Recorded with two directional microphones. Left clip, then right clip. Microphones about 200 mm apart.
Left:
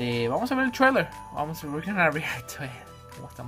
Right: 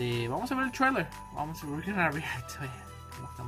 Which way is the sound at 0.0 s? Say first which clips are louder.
Left 6 dB; 15° left (ahead or behind).